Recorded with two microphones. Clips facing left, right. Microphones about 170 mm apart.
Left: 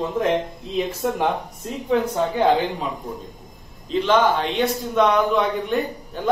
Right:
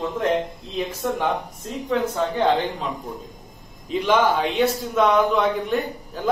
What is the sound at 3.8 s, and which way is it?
A man's voice, 10° right (ahead or behind).